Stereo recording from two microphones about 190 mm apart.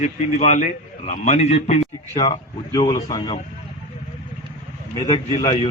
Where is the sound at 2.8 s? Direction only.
20° left (ahead or behind).